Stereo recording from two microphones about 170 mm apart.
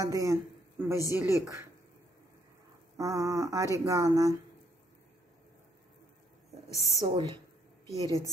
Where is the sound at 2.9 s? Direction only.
20° right (ahead or behind).